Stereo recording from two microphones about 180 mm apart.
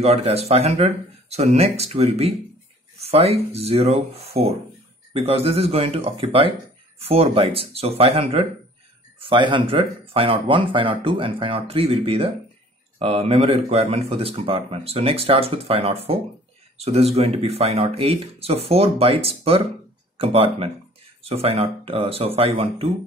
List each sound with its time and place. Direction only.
0.0 s speech: 35° right (ahead or behind)